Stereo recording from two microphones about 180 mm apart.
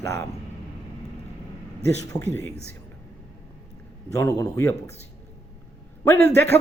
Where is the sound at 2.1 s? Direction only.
25° left (ahead or behind).